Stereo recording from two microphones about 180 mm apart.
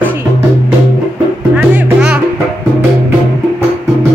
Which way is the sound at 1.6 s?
10° right (ahead or behind).